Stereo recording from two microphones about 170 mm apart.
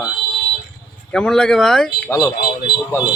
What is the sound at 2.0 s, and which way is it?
Speech, 20° left (ahead or behind).